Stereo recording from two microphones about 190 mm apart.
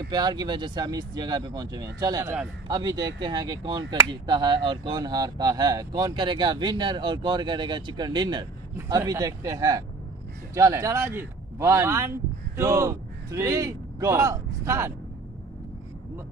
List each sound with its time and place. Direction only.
0.1 s speech: 20° right (ahead or behind)